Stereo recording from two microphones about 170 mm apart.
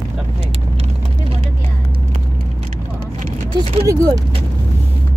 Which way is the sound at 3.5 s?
25° right (ahead or behind).